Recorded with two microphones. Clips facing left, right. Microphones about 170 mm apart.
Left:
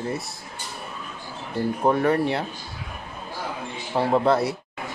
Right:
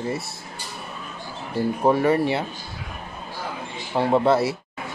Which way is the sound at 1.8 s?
5° right (ahead or behind).